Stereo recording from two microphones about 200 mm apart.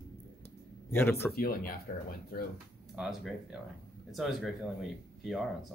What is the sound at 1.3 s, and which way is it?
Speech, 50° left (ahead or behind).